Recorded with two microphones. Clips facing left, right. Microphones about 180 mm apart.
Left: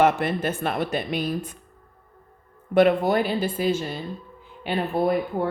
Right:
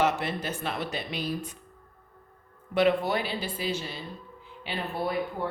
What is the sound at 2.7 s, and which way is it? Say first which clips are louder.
Speech: left 6 dB; 50° left (ahead or behind).